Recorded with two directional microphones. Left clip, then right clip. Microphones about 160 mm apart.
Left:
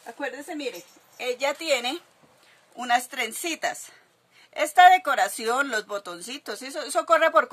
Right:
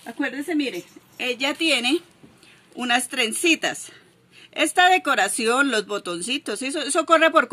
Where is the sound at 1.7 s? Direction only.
35° left (ahead or behind).